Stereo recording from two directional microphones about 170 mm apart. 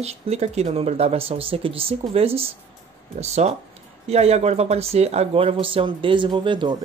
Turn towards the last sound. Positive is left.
turn(degrees=-30)  # may be behind; listen again after turning